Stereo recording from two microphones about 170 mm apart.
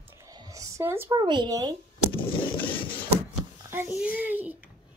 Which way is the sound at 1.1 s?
25° right (ahead or behind).